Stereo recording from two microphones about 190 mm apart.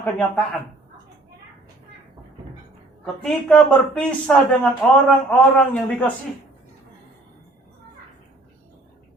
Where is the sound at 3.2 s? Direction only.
5° left (ahead or behind).